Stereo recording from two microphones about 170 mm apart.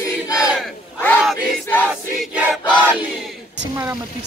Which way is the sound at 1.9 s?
5° right (ahead or behind).